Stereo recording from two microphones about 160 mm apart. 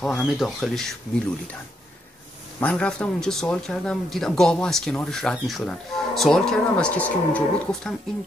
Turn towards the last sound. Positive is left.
turn(degrees=10)  # may be behind; listen again after turning